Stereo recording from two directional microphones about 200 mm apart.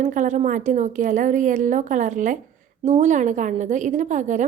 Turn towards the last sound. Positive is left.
turn(degrees=-40)  # may be behind; listen again after turning